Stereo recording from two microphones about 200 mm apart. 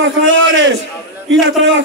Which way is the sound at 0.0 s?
65° right (ahead or behind).